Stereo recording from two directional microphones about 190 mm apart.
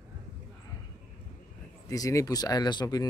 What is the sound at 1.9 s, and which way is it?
Speech, 15° left (ahead or behind).